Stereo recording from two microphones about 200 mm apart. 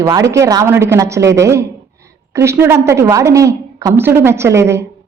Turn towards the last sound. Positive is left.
turn(degrees=-15)  # may be behind; listen again after turning